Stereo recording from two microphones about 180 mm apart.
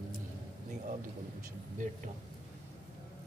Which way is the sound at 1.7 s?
45° right (ahead or behind).